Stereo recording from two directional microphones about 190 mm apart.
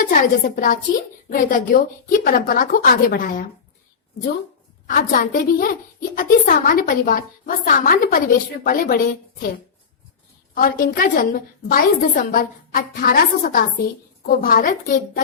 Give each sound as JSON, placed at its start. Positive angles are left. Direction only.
{"t": 0.0, "sound": "a woman's voice", "side_deg": 45}
{"t": 4.9, "sound": "a woman's voice", "side_deg": 45}
{"t": 10.5, "sound": "a woman's voice", "side_deg": 50}